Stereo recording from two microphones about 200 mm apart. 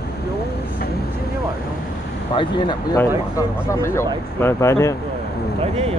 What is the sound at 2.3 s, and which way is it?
Speech, 25° left (ahead or behind).